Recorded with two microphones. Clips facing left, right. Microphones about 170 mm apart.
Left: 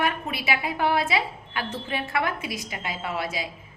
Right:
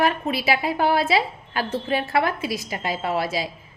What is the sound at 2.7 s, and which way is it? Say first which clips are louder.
Speech: right 7 dB; 35° right (ahead or behind).